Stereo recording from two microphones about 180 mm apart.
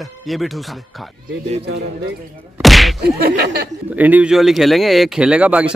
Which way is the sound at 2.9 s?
60° right (ahead or behind).